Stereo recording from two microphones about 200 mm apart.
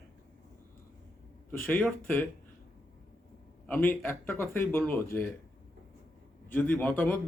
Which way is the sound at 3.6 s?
10° left (ahead or behind).